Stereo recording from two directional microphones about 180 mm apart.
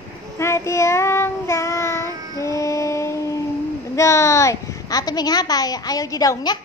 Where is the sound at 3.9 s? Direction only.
15° left (ahead or behind).